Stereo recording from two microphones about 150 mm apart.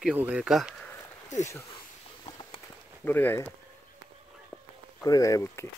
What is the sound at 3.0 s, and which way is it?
Speech, 15° left (ahead or behind).